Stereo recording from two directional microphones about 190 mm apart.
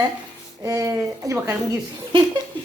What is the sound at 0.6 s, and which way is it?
Speech, 20° right (ahead or behind).